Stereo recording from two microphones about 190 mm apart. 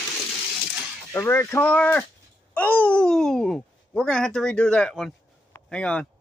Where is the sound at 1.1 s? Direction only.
10° left (ahead or behind).